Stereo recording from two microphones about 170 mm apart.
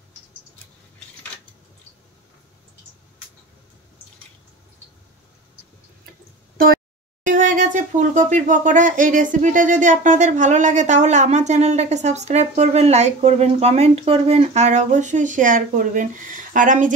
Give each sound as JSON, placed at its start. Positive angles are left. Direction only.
{"t": 7.2, "sound": "speech", "side_deg": -50}